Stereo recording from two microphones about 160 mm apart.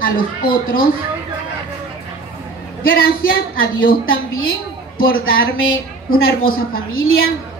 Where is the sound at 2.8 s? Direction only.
65° left (ahead or behind).